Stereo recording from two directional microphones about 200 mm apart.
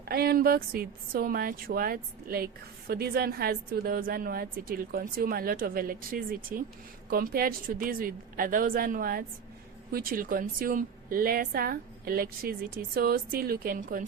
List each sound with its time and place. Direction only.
0.0 s a woman's voice: 50° right (ahead or behind)